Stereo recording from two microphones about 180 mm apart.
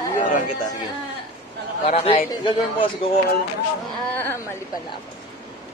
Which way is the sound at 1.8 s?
35° left (ahead or behind).